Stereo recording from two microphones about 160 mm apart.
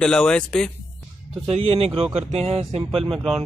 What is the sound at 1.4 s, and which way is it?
Speech, 40° right (ahead or behind).